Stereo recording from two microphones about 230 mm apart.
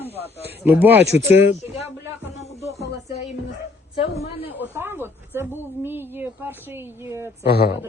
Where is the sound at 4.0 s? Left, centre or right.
Left.